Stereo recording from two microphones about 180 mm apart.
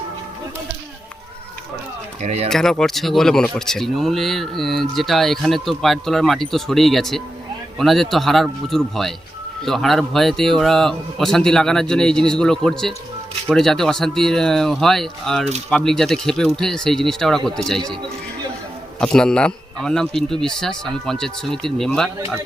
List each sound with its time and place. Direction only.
2.2 s speech: 35° right (ahead or behind)
2.5 s speech: 5° left (ahead or behind)
18.9 s speech: 5° left (ahead or behind)